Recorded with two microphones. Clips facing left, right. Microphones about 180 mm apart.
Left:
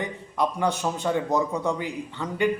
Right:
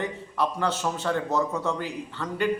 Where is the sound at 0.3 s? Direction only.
15° left (ahead or behind).